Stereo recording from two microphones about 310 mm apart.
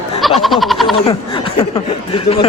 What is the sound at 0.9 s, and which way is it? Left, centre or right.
Speech, centre.